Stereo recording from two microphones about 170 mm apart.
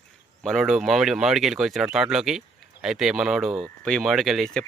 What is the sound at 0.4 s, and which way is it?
Speech, centre (ahead or behind).